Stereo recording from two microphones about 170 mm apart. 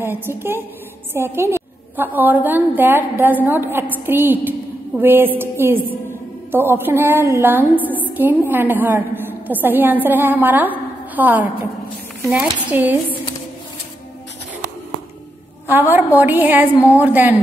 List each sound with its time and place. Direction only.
0.0 s a woman's voice: 15° right (ahead or behind)
12.6 s speech: 10° right (ahead or behind)
15.6 s a woman's voice: 10° right (ahead or behind)